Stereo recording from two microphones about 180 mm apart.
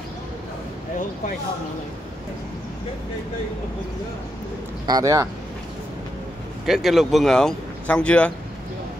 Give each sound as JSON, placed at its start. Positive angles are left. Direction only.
{"t": 4.8, "sound": "speech", "side_deg": -20}
{"t": 6.6, "sound": "speech", "side_deg": 0}